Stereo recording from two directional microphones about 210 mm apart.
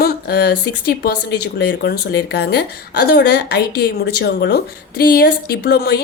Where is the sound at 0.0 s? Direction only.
50° left (ahead or behind).